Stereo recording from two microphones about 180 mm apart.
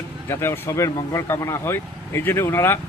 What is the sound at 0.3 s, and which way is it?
Speech, 15° left (ahead or behind).